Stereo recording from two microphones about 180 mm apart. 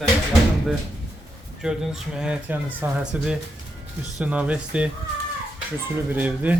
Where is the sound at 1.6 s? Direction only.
Centre (ahead or behind).